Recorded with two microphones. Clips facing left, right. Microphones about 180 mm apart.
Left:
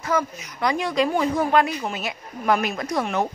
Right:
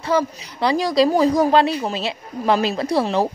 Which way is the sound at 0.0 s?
30° right (ahead or behind).